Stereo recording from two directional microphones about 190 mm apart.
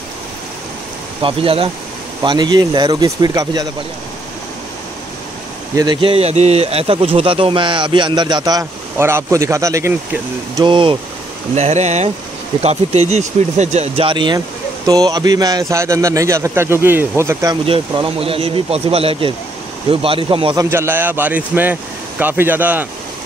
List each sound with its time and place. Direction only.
1.2 s speech: 30° right (ahead or behind)
5.8 s speech: 25° right (ahead or behind)
10.6 s speech: 25° right (ahead or behind)
11.5 s a man's voice: 35° right (ahead or behind); by 17.6 s 15° right (ahead or behind)
17.6 s speech: 30° right (ahead or behind)
20.7 s a man's voice: 10° right (ahead or behind)